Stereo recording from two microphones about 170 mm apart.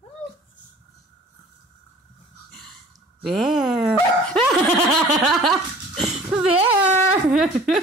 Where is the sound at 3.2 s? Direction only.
Centre (ahead or behind).